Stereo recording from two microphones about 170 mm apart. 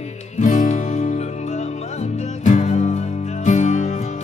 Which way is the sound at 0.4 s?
50° left (ahead or behind).